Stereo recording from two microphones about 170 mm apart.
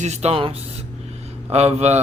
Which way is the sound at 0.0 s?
40° right (ahead or behind).